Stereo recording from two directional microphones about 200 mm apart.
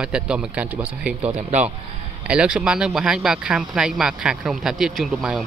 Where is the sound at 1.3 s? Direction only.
35° right (ahead or behind).